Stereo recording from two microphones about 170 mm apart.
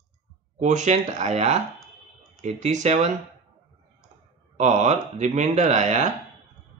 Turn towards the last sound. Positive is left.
turn(degrees=-45)  # may be behind; listen again after turning